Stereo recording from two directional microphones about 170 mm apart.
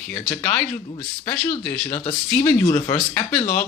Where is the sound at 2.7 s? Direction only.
20° left (ahead or behind).